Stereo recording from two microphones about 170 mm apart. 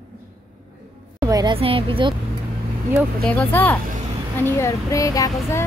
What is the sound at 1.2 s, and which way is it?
Speech, 25° right (ahead or behind).